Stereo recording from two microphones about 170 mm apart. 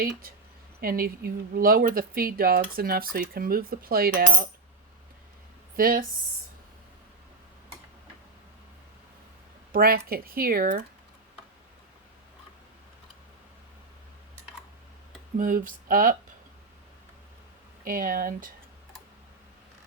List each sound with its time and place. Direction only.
0.0 s speech: 60° right (ahead or behind)
5.7 s speech: 55° right (ahead or behind)
9.7 s speech: 60° right (ahead or behind)
15.4 s speech: 55° right (ahead or behind)
17.8 s speech: 55° right (ahead or behind)